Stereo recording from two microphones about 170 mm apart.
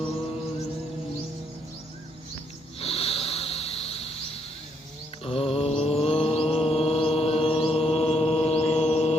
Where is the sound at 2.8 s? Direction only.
35° left (ahead or behind).